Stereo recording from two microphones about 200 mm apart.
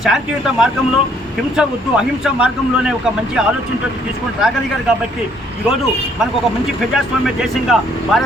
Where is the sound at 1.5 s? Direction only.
5° right (ahead or behind).